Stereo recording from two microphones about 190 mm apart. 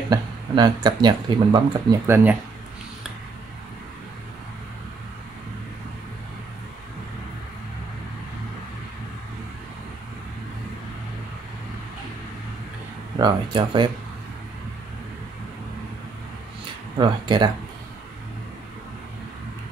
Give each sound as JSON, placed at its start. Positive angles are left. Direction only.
{"t": 0.1, "sound": "speech", "side_deg": -20}
{"t": 13.2, "sound": "speech", "side_deg": -25}
{"t": 17.0, "sound": "speech", "side_deg": -25}